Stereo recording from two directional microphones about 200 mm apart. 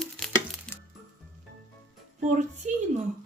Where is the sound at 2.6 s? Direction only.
40° right (ahead or behind).